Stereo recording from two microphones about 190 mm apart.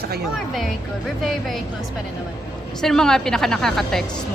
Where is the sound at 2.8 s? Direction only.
5° left (ahead or behind).